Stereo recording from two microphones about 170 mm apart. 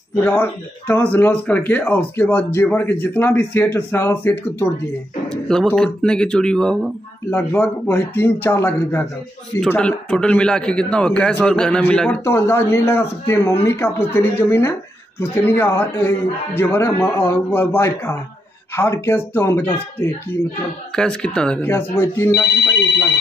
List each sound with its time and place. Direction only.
0.2 s a man's voice: 10° left (ahead or behind)
22.3 s speech: 80° left